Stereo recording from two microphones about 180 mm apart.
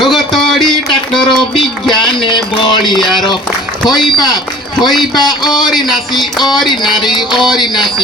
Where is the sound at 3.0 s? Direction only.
25° left (ahead or behind).